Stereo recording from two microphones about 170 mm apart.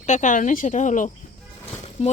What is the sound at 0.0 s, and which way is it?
Speech, 45° left (ahead or behind).